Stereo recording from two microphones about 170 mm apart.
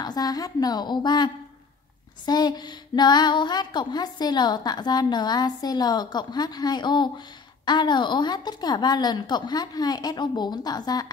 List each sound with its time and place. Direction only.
0.0 s music: 20° left (ahead or behind)